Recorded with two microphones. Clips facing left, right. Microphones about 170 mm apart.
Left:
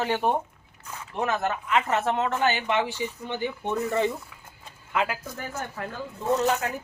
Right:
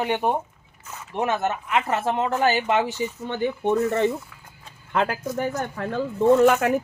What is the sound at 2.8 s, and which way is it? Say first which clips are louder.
Speech: right 3 dB; 15° right (ahead or behind).